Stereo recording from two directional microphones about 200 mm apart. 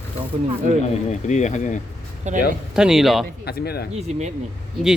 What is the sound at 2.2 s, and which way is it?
Speech, 35° right (ahead or behind).